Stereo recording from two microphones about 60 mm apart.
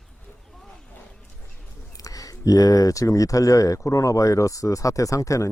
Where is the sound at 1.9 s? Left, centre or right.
Left.